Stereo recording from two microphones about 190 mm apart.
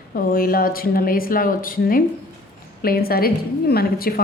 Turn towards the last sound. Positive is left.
turn(degrees=50)  # may be behind; listen again after turning